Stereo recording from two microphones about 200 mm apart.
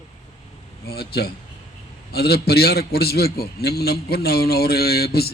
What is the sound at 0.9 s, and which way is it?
A man's voice, 50° left (ahead or behind).